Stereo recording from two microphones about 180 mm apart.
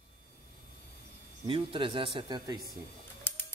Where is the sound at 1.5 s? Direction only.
25° right (ahead or behind).